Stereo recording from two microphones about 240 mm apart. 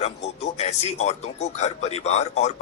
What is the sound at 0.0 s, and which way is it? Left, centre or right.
A man's voice, left.